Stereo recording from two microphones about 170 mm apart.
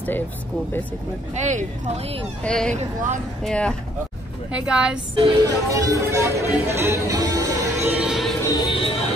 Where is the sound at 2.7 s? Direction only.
45° right (ahead or behind).